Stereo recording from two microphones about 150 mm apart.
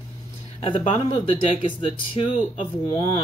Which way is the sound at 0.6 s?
40° left (ahead or behind).